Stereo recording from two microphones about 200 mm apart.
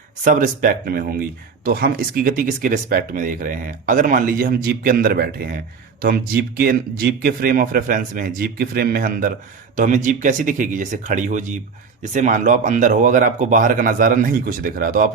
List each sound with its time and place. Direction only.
0.3 s a man's voice: 40° right (ahead or behind)